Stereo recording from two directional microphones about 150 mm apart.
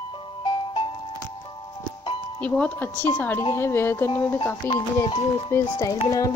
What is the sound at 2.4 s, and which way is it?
A woman's voice, 10° left (ahead or behind).